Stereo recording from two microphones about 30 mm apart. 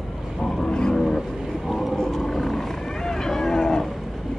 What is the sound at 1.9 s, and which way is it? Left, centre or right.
Vehicle, centre.